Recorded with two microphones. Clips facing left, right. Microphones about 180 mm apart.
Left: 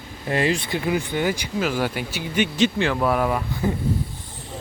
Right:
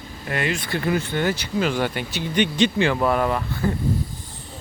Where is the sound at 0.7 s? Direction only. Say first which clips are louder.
Even; 15° left (ahead or behind).